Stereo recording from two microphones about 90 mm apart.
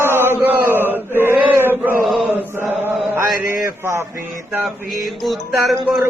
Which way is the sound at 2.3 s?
25° right (ahead or behind).